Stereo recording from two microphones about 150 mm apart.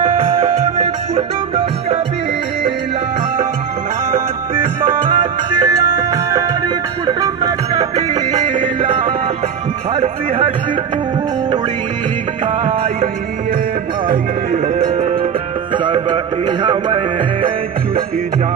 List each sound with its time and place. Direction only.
0.0 s music: 50° right (ahead or behind)
1.1 s music: 30° right (ahead or behind)
4.8 s music: 30° right (ahead or behind)
12.6 s music: 40° right (ahead or behind)
14.1 s music: 55° right (ahead or behind)
14.9 s music: 45° right (ahead or behind)
15.7 s music: 35° right (ahead or behind)